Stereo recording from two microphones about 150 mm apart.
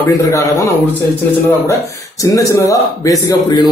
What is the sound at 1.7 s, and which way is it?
Speech, 20° left (ahead or behind).